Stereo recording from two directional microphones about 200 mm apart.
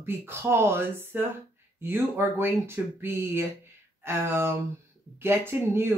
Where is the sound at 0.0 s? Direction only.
10° right (ahead or behind).